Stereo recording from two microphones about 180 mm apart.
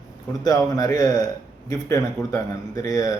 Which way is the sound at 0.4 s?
20° left (ahead or behind).